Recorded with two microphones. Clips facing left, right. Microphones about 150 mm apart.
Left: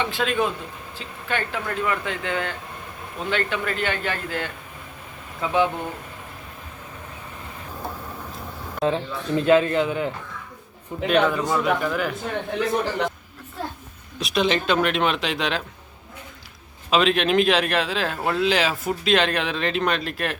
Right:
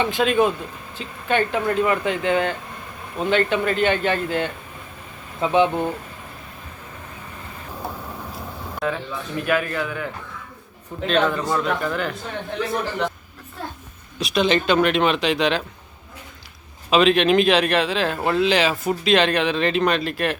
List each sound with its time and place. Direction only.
0.0 s speech: 20° right (ahead or behind)
8.8 s a man's voice: 25° left (ahead or behind); by 12.1 s 5° left (ahead or behind)
14.2 s speech: centre (ahead or behind)
16.9 s speech: centre (ahead or behind)